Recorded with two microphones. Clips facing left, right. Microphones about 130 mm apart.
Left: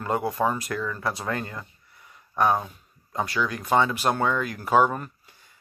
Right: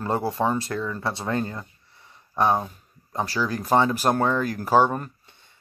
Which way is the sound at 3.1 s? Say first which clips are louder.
Right 1 dB; 35° right (ahead or behind).